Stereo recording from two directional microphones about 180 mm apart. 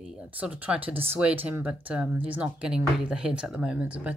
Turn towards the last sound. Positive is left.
turn(degrees=-10)  # may be behind; listen again after turning